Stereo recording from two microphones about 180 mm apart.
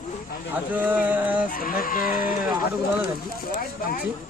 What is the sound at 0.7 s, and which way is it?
Speech, 10° right (ahead or behind).